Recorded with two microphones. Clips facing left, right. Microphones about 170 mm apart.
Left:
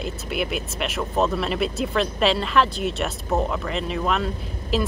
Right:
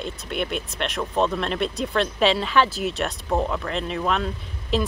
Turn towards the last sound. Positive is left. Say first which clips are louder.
# even
turn(degrees=0)  # may be behind; listen again after turning